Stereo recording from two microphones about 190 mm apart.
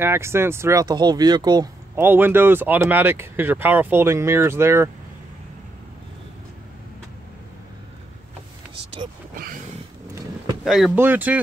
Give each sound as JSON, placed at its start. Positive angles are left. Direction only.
{"t": 0.0, "sound": "speech", "side_deg": -15}
{"t": 9.3, "sound": "a sound", "side_deg": -45}
{"t": 10.1, "sound": "vehicle", "side_deg": -20}
{"t": 10.6, "sound": "speech", "side_deg": 0}